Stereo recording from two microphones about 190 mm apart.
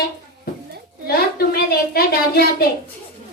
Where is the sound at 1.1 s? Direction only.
55° left (ahead or behind).